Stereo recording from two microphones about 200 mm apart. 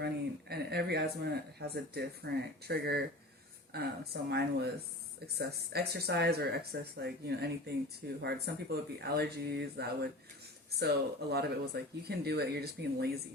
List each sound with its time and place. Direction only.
0.0 s speech: 55° right (ahead or behind)